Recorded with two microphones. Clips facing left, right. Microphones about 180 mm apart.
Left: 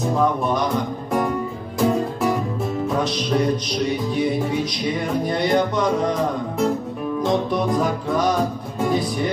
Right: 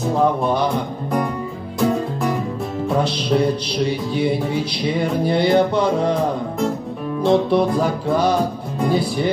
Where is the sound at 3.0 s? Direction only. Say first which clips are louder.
Right 2 dB; 30° right (ahead or behind).